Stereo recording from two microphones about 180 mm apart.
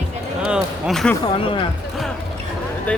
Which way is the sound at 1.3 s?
30° left (ahead or behind).